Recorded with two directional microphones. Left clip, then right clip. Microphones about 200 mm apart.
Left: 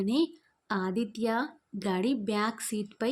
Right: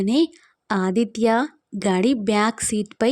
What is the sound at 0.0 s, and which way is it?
A woman's voice, 40° right (ahead or behind).